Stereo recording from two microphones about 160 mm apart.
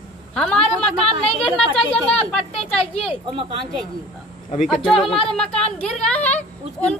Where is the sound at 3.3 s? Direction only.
35° right (ahead or behind).